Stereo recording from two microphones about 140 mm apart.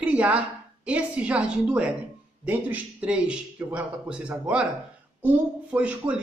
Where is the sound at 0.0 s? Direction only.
10° right (ahead or behind).